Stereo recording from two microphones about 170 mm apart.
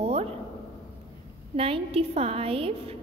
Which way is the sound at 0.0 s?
35° right (ahead or behind).